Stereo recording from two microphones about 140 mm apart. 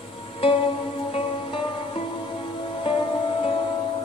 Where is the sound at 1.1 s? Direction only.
45° left (ahead or behind).